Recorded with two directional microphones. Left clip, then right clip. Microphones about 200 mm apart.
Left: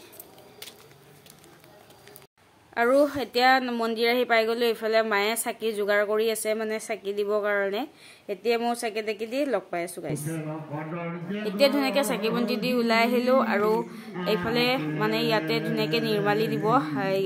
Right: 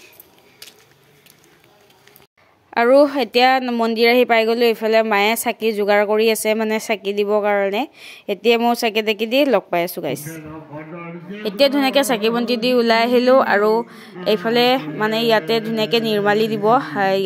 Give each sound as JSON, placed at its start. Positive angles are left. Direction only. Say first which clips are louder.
{"t": 2.7, "sound": "speech", "louder": "right 9 dB", "side_deg": -45}
{"t": 11.4, "sound": "speech", "louder": "right 7 dB", "side_deg": -40}